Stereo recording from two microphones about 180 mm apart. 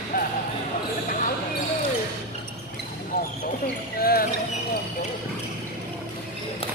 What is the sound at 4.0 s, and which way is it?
Music, 55° left (ahead or behind).